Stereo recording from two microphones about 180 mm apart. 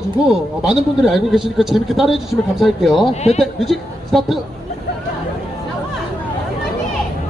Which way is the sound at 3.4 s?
Centre (ahead or behind).